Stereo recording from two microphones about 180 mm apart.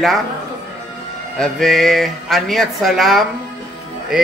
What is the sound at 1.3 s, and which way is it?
Speech, centre (ahead or behind).